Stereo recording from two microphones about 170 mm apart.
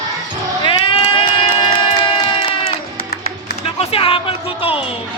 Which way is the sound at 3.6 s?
35° left (ahead or behind).